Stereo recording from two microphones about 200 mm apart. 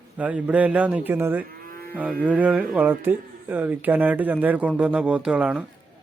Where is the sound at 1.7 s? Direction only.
45° right (ahead or behind).